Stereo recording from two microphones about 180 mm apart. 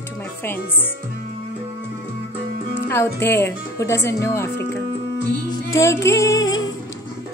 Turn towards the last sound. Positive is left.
turn(degrees=20)  # may be behind; listen again after turning